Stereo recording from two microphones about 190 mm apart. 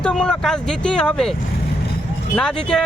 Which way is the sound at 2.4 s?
5° left (ahead or behind).